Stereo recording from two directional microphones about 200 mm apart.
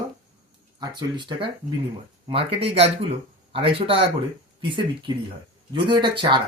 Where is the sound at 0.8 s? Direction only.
20° right (ahead or behind).